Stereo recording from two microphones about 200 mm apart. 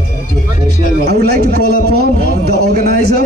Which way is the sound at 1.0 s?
50° right (ahead or behind).